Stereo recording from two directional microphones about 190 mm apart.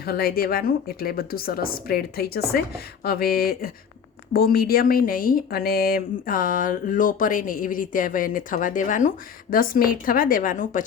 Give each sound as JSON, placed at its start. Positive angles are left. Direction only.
{"t": 0.0, "sound": "speech", "side_deg": 55}